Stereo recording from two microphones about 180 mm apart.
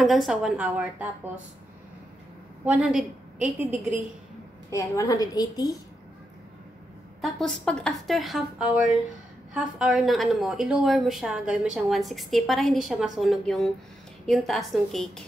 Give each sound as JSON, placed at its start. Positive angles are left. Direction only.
{"t": 0.0, "sound": "a woman's voice", "side_deg": 0}
{"t": 2.6, "sound": "a woman's voice", "side_deg": -10}
{"t": 4.6, "sound": "a woman's voice", "side_deg": 15}
{"t": 7.2, "sound": "a woman's voice", "side_deg": 0}